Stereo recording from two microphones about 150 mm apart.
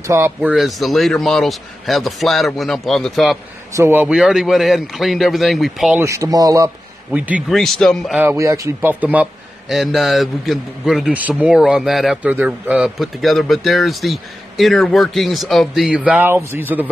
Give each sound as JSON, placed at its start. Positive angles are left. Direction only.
{"t": 0.0, "sound": "speech", "side_deg": -20}
{"t": 0.5, "sound": "a man's voice", "side_deg": 0}
{"t": 3.7, "sound": "speech", "side_deg": -15}
{"t": 4.1, "sound": "a man's voice", "side_deg": -5}
{"t": 5.9, "sound": "speech", "side_deg": -20}
{"t": 7.1, "sound": "speech", "side_deg": -10}
{"t": 7.5, "sound": "a man's voice", "side_deg": 0}
{"t": 8.2, "sound": "a man's voice", "side_deg": -20}